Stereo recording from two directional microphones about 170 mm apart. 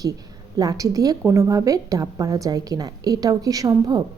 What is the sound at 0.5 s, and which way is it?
A woman's voice, 20° right (ahead or behind).